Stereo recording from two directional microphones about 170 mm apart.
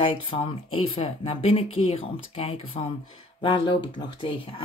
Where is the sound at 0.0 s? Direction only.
30° left (ahead or behind).